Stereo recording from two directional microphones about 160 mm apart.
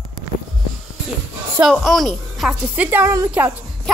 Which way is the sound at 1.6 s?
Centre (ahead or behind).